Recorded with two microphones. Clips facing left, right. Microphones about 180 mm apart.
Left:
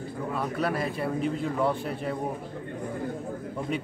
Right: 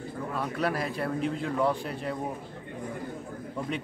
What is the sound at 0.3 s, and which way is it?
Speech, centre (ahead or behind).